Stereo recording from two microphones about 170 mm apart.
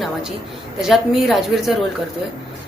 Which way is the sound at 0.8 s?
Centre (ahead or behind).